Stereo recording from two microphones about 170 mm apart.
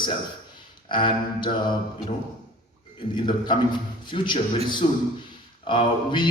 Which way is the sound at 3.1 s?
30° left (ahead or behind).